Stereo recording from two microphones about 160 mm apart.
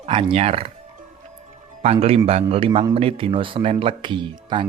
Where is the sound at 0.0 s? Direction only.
35° right (ahead or behind).